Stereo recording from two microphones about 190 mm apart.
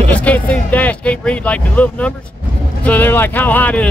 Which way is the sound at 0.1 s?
5° left (ahead or behind).